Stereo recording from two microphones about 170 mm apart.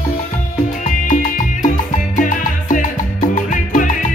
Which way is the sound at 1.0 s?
50° left (ahead or behind).